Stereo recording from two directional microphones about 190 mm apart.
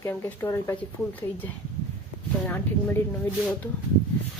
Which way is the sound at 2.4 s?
10° left (ahead or behind).